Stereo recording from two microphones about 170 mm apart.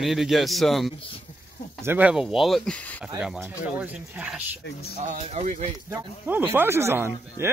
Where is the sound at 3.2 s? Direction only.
5° right (ahead or behind).